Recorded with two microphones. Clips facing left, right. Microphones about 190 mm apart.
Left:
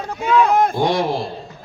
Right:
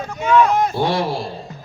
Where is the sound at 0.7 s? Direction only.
15° left (ahead or behind).